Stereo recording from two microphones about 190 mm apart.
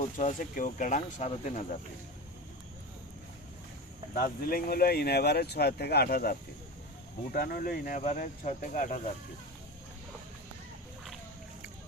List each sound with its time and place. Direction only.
0.0 s speech: 40° left (ahead or behind)
4.1 s speech: 50° left (ahead or behind)
7.3 s speech: 50° left (ahead or behind)